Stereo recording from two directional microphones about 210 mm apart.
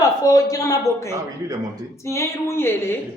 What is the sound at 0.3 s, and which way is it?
A woman's voice, 15° left (ahead or behind).